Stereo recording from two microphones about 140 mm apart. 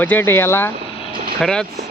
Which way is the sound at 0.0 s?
10° left (ahead or behind).